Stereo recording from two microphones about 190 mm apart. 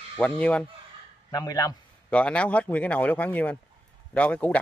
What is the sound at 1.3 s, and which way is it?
Speech, 20° left (ahead or behind).